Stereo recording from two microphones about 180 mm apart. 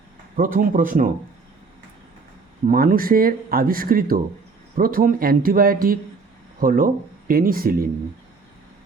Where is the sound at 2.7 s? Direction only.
50° right (ahead or behind).